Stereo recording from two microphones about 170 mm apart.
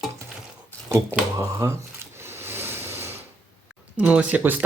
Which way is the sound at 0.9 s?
15° right (ahead or behind).